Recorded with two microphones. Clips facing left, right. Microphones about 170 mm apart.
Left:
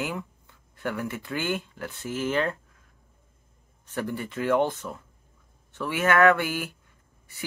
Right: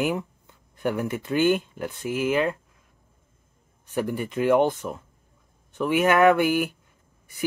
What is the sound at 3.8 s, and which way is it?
Speech, 10° right (ahead or behind).